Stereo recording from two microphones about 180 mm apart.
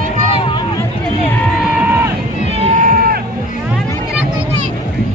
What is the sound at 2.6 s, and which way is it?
Music, 45° right (ahead or behind).